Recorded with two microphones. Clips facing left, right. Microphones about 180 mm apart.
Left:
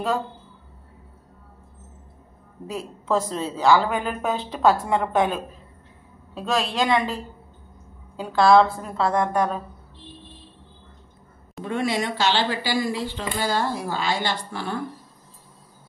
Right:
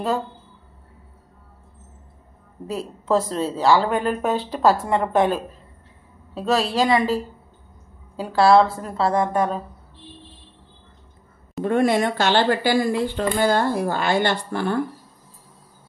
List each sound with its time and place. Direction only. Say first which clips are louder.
2.7 s a woman's voice: right 3 dB; centre (ahead or behind)
8.2 s a woman's voice: right 1 dB; 5° right (ahead or behind)
11.6 s speech: right 6 dB; 55° right (ahead or behind)